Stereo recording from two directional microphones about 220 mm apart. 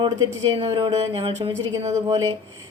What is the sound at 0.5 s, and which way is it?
Speech, 25° right (ahead or behind).